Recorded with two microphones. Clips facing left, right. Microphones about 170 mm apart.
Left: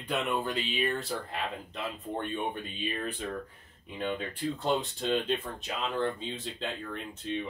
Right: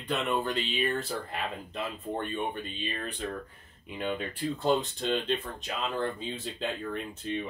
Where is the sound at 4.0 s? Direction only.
5° right (ahead or behind).